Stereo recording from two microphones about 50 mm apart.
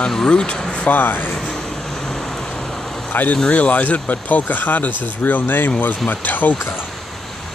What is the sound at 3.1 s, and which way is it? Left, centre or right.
Speech, left.